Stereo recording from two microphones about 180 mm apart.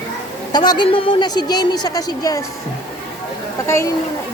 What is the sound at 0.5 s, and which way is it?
A woman's voice, 25° left (ahead or behind).